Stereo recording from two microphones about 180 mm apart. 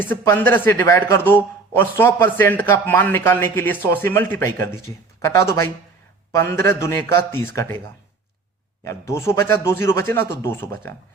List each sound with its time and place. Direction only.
0.0 s speech: 10° left (ahead or behind)
8.8 s speech: 15° left (ahead or behind)